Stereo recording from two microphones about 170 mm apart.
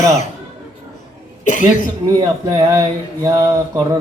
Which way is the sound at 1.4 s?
50° left (ahead or behind).